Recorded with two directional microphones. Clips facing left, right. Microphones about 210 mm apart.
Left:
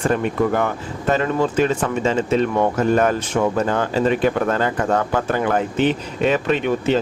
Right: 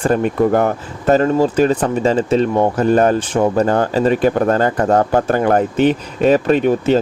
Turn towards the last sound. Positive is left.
turn(degrees=-40)  # may be behind; listen again after turning